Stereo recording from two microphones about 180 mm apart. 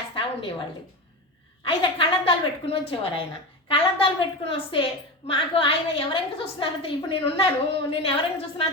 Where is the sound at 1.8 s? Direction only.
30° left (ahead or behind).